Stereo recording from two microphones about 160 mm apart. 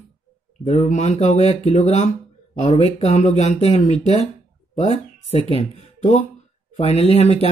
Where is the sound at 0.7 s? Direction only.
45° left (ahead or behind).